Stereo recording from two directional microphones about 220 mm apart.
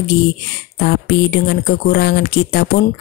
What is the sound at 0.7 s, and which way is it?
Speech, 45° left (ahead or behind).